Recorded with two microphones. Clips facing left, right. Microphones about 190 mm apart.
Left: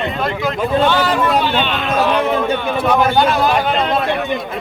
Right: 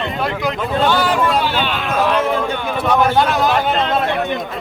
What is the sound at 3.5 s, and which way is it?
Speech, 10° left (ahead or behind).